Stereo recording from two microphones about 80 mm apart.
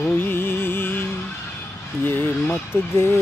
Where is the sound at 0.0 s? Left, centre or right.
Left.